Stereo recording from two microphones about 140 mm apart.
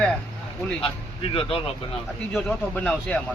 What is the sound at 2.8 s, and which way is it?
Speech, 5° left (ahead or behind).